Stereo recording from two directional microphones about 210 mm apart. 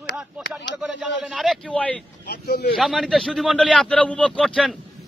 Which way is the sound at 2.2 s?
50° left (ahead or behind).